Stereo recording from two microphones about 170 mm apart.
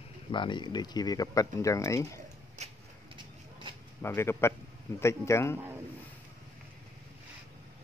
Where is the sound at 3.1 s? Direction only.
30° right (ahead or behind).